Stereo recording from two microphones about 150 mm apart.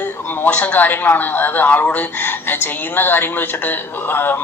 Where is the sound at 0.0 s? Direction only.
15° left (ahead or behind).